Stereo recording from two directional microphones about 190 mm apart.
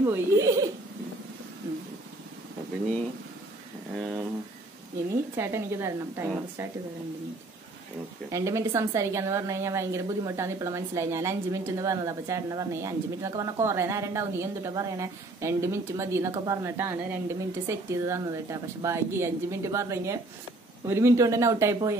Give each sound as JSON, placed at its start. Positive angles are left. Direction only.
{"t": 0.0, "sound": "a woman's voice", "side_deg": -15}
{"t": 3.9, "sound": "a sound", "side_deg": -5}
{"t": 5.3, "sound": "a woman's voice", "side_deg": -15}
{"t": 8.3, "sound": "a woman's voice", "side_deg": -15}